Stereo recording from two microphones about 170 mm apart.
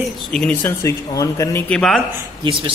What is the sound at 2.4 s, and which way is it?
Speech, 30° right (ahead or behind).